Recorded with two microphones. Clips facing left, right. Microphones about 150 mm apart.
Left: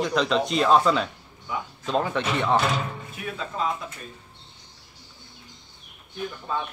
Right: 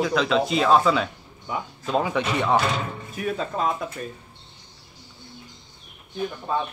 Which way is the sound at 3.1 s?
40° right (ahead or behind).